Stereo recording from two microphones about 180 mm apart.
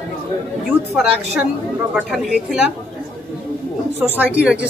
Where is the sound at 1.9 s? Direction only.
5° right (ahead or behind).